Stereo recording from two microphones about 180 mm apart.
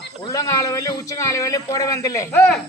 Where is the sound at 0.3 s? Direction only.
20° left (ahead or behind).